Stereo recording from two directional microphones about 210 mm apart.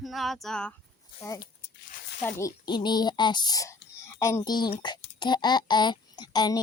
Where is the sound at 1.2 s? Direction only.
15° left (ahead or behind).